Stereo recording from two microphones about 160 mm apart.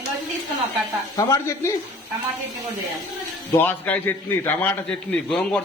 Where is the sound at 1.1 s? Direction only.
20° left (ahead or behind).